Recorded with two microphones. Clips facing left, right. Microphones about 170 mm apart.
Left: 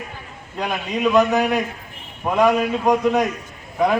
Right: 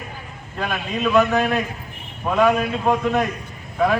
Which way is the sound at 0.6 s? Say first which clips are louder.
Left 2 dB; 15° left (ahead or behind).